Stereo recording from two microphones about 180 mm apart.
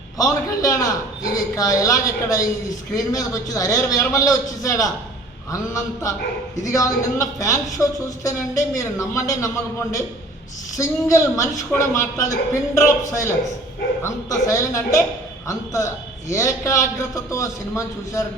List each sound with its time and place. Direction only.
0.2 s a man's voice: 20° left (ahead or behind)
10.8 s speech: 20° left (ahead or behind)